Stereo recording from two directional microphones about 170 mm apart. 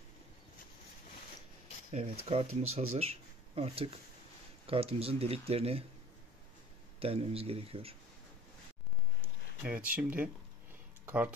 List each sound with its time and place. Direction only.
1.9 s speech: 40° right (ahead or behind)
7.0 s speech: 35° right (ahead or behind)
9.6 s speech: 10° right (ahead or behind)